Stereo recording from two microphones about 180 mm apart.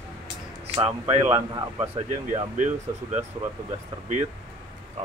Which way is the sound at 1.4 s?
15° right (ahead or behind).